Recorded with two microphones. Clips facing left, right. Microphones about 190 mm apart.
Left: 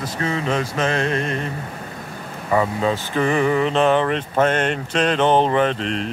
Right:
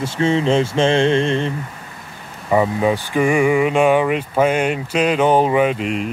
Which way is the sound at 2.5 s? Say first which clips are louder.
Right 3 dB; 15° right (ahead or behind).